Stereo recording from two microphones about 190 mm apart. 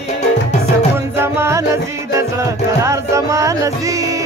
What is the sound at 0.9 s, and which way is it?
Music, 15° right (ahead or behind).